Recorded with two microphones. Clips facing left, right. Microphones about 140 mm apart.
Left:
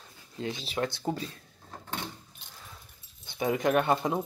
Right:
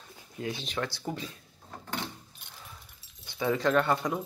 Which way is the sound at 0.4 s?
25° left (ahead or behind).